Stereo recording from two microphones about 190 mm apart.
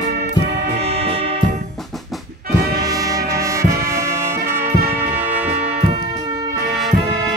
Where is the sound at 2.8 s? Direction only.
20° right (ahead or behind).